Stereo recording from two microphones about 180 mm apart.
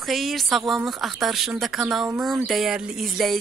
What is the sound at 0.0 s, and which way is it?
Speech, centre (ahead or behind).